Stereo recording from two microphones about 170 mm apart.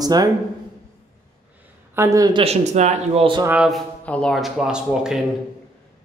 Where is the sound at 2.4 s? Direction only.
40° right (ahead or behind).